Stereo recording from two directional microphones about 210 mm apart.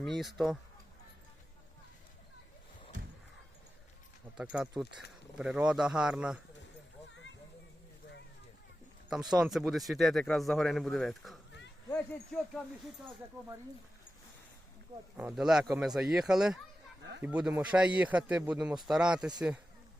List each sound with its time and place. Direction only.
0.0 s speech: centre (ahead or behind)
4.5 s speech: 5° right (ahead or behind)
9.0 s speech: 5° right (ahead or behind)
15.2 s speech: 5° right (ahead or behind)
17.0 s a sound: 55° right (ahead or behind)
17.2 s speech: 5° right (ahead or behind)